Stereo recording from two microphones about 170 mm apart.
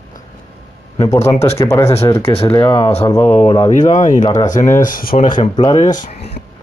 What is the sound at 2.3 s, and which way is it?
Speech, 35° left (ahead or behind).